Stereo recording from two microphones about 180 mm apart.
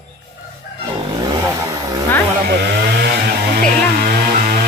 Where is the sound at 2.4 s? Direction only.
65° right (ahead or behind).